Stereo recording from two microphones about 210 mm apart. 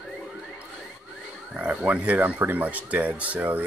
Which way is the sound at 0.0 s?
5° right (ahead or behind).